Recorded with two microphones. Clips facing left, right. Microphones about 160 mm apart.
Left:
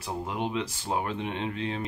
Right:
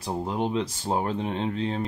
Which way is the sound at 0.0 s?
35° right (ahead or behind).